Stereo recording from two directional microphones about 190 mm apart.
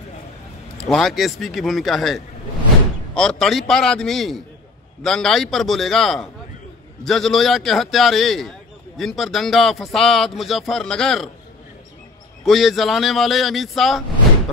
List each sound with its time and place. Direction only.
0.7 s a man's voice: centre (ahead or behind)
12.4 s a man's voice: centre (ahead or behind)